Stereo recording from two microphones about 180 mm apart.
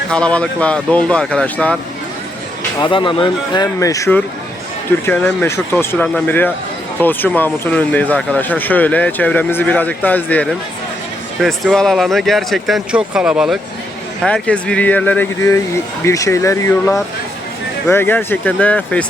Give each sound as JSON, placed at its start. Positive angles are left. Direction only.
{"t": 0.1, "sound": "speech", "side_deg": 5}
{"t": 2.8, "sound": "speech", "side_deg": 25}